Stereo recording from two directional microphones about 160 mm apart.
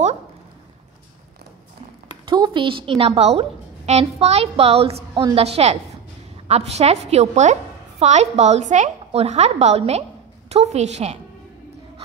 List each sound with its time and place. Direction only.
2.2 s a woman's voice: 30° right (ahead or behind)
4.2 s music: 40° right (ahead or behind)
6.4 s a woman's voice: 40° right (ahead or behind)